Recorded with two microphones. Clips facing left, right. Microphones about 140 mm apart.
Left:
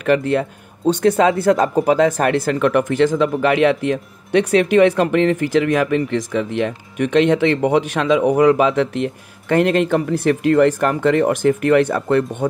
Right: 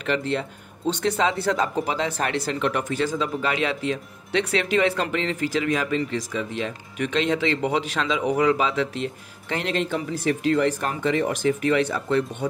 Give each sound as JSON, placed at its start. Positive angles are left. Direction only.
{"t": 0.0, "sound": "speech", "side_deg": 50}